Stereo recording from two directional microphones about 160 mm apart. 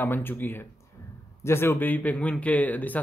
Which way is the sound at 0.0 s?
15° left (ahead or behind).